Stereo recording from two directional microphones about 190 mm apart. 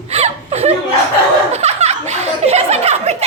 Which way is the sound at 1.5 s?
35° right (ahead or behind).